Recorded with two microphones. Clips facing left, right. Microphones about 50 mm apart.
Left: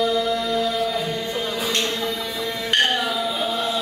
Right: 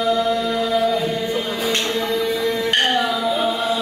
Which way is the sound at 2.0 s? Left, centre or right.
Right.